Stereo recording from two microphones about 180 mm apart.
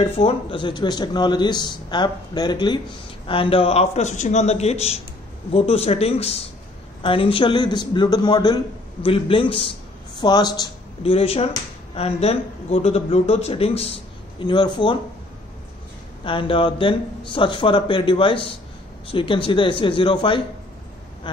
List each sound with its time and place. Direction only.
0.0 s speech: 30° left (ahead or behind)
16.3 s speech: 30° left (ahead or behind)